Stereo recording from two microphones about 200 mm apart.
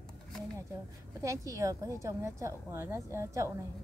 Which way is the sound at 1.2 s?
15° right (ahead or behind).